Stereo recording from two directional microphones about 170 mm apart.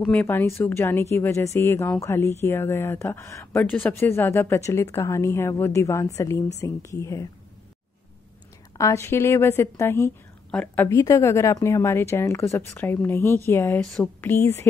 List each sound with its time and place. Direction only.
0.0 s a woman's voice: 10° left (ahead or behind)
8.7 s a woman's voice: 15° left (ahead or behind)
13.8 s speech: centre (ahead or behind)
14.3 s a woman's voice: 15° left (ahead or behind)